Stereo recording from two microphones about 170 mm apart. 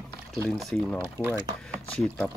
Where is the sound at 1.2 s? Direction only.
15° right (ahead or behind).